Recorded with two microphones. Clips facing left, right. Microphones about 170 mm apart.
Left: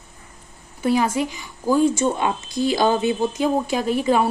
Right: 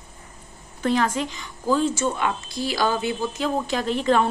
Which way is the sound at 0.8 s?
10° left (ahead or behind).